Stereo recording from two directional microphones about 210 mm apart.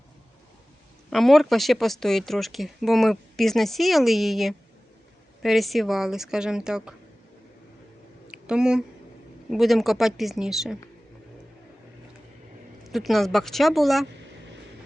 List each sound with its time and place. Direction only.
1.1 s speech: centre (ahead or behind)
8.3 s a sound: 5° right (ahead or behind)
9.5 s speech: centre (ahead or behind)
12.8 s speech: centre (ahead or behind)